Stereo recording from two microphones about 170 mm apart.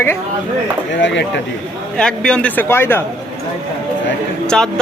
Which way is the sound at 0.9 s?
90° left.